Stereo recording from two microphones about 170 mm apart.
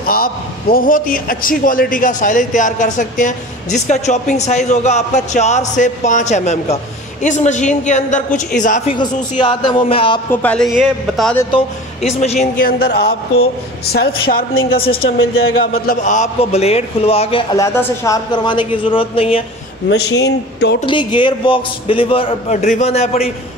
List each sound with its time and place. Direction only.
0.1 s a man's voice: 60° left (ahead or behind)
9.4 s a woman's voice: 25° left (ahead or behind)
10.3 s speech: 10° left (ahead or behind)
11.5 s a man's voice: 40° left (ahead or behind)
12.6 s a woman's voice: 60° left (ahead or behind)
14.3 s a woman's voice: 60° left (ahead or behind)
16.0 s a man's voice: 45° left (ahead or behind)
19.9 s speech: 80° left
20.8 s a man's voice: 30° left (ahead or behind)